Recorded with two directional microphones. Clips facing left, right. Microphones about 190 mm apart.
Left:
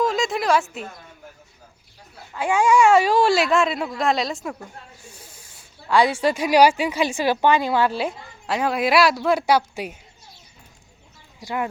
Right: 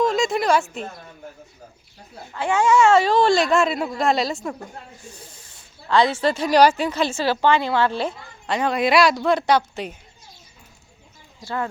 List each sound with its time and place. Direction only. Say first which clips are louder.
0.0 s speech: right 2 dB; centre (ahead or behind)
2.3 s speech: even; 10° left (ahead or behind)
5.9 s a woman's voice: even; 10° left (ahead or behind)
11.3 s speech: left 1 dB; 15° left (ahead or behind)